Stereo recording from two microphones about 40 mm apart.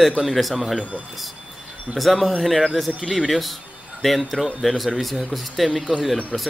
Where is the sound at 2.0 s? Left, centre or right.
Centre.